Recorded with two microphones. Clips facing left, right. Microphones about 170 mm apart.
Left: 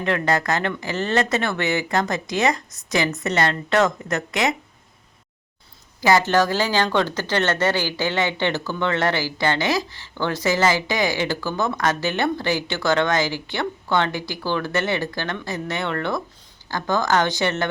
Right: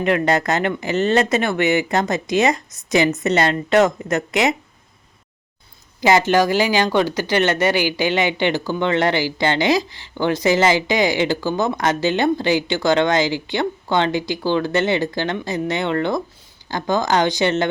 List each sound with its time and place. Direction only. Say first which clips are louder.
0.0 s speech: right 4 dB; 20° right (ahead or behind)
6.0 s speech: right 2 dB; 20° right (ahead or behind)